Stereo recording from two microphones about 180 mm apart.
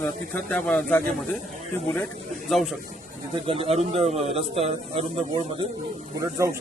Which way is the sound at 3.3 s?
30° right (ahead or behind).